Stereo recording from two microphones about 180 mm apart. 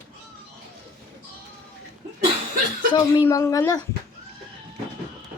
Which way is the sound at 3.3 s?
15° left (ahead or behind).